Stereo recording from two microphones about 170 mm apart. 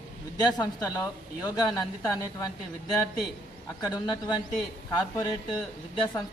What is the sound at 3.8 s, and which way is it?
Speech, 25° left (ahead or behind).